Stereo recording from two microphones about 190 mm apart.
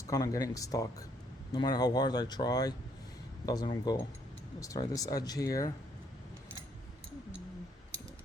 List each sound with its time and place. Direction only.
0.1 s speech: 20° left (ahead or behind)